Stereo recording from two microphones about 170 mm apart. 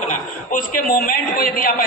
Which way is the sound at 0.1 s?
50° left (ahead or behind).